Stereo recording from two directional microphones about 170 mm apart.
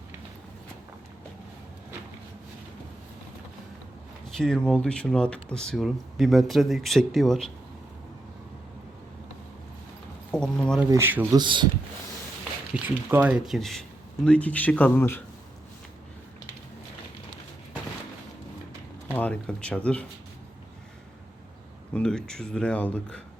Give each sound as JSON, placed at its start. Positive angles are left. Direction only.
{"t": 4.4, "sound": "speech", "side_deg": 5}
{"t": 10.3, "sound": "speech", "side_deg": 5}
{"t": 10.8, "sound": "speech", "side_deg": -15}
{"t": 11.3, "sound": "speech", "side_deg": -25}
{"t": 12.7, "sound": "speech", "side_deg": -10}
{"t": 19.1, "sound": "speech", "side_deg": 10}
{"t": 21.9, "sound": "speech", "side_deg": 5}